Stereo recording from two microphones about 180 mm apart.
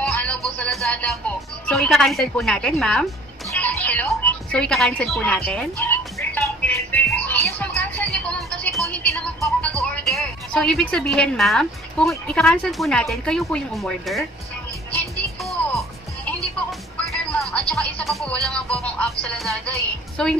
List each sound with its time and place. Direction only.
0.0 s music: 5° left (ahead or behind)
1.7 s a woman's voice: centre (ahead or behind)
3.5 s music: 10° left (ahead or behind)
9.1 s music: 15° left (ahead or behind)
9.8 s a woman's voice: centre (ahead or behind)
16.9 s music: 5° left (ahead or behind)
20.2 s a woman's voice: 5° left (ahead or behind)